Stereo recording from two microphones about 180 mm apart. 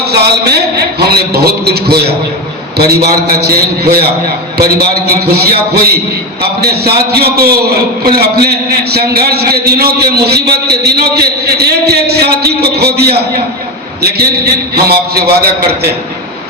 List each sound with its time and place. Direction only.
0.0 s a man's voice: 65° right (ahead or behind)
14.8 s a man's voice: 60° right (ahead or behind)